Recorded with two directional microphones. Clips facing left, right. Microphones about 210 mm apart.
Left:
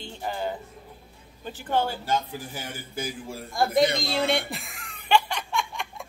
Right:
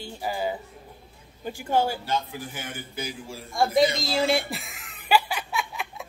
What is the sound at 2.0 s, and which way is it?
A man's voice, 40° left (ahead or behind).